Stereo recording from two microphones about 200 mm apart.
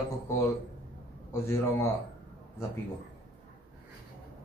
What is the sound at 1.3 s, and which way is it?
Speech, 15° left (ahead or behind).